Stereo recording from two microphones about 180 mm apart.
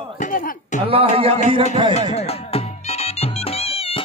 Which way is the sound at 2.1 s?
35° left (ahead or behind).